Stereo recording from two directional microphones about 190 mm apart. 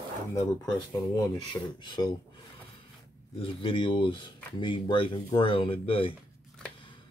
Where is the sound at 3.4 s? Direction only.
25° left (ahead or behind).